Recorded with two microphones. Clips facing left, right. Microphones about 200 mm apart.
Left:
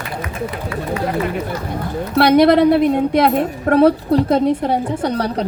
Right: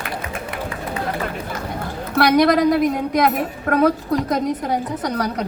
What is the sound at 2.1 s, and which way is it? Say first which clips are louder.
A woman's voice: left 4 dB; 25° left (ahead or behind).